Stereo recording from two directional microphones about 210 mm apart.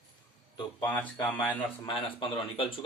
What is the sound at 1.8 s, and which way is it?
Speech, 25° left (ahead or behind).